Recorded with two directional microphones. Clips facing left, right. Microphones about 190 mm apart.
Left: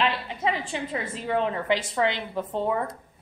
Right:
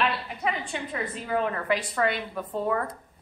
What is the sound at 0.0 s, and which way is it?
A woman's voice, 25° left (ahead or behind).